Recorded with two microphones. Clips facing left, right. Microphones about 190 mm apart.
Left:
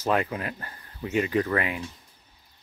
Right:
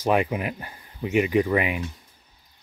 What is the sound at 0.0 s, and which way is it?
Speech, 15° right (ahead or behind).